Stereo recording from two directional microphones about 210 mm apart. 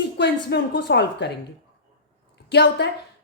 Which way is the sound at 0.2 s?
55° left (ahead or behind).